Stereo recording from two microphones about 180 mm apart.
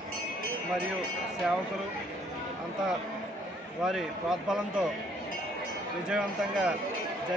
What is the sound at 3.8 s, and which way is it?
A man's voice, centre (ahead or behind).